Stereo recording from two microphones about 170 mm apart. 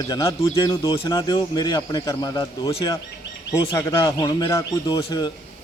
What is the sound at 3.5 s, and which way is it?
A man's voice, 20° left (ahead or behind).